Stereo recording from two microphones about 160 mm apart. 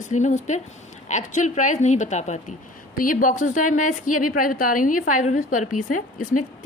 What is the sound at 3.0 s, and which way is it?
A woman's voice, 60° left (ahead or behind).